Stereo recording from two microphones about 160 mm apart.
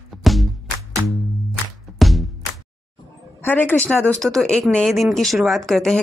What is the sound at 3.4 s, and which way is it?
Speech, 10° left (ahead or behind).